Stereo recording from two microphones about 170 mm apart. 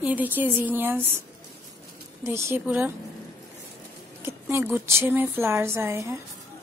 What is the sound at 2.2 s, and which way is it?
Speech, 15° right (ahead or behind).